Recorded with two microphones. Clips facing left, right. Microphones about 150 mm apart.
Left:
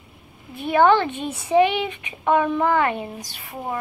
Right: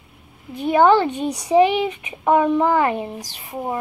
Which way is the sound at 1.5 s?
25° right (ahead or behind).